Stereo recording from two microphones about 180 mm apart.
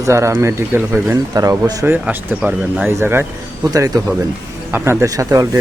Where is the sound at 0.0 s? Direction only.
15° right (ahead or behind).